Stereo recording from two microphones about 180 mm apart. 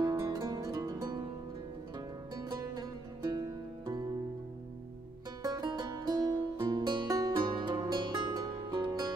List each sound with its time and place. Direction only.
0.0 s music: 20° right (ahead or behind)
2.3 s music: 20° right (ahead or behind)
5.4 s music: 20° right (ahead or behind)